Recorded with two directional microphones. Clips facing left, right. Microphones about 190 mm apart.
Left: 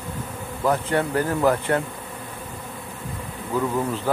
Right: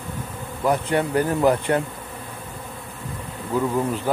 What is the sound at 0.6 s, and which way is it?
Speech, 15° right (ahead or behind).